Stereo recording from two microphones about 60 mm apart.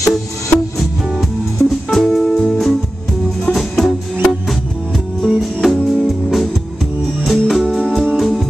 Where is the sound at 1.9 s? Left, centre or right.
Centre.